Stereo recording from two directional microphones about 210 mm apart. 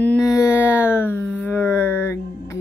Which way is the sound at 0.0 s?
10° left (ahead or behind).